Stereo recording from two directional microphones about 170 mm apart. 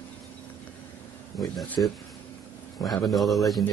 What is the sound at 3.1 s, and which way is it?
Speech, centre (ahead or behind).